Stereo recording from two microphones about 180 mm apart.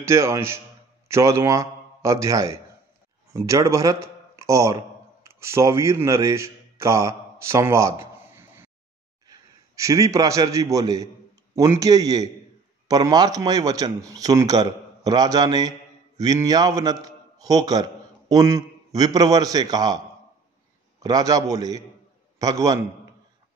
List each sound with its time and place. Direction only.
0.0 s a man's voice: 15° right (ahead or behind)
21.0 s speech: 20° right (ahead or behind)